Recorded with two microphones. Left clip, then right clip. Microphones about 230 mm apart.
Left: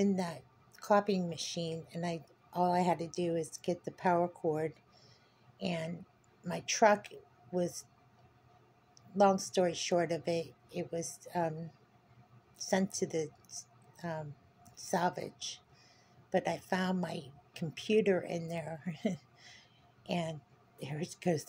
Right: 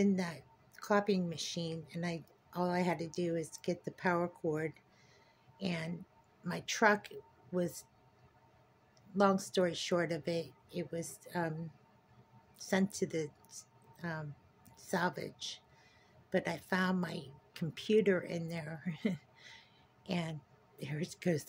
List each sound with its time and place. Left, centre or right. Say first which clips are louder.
0.0 s a woman's voice: left 1 dB; centre
9.1 s speech: left 3 dB; centre
12.5 s speech: left 2 dB; centre
15.3 s speech: left 1 dB; right
16.3 s a woman's voice: left 2 dB; centre